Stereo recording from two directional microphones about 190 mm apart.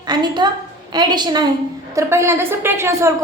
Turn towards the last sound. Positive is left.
turn(degrees=-15)  # may be behind; listen again after turning